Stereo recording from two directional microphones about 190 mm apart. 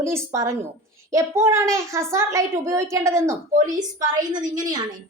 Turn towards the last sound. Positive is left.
turn(degrees=-20)  # may be behind; listen again after turning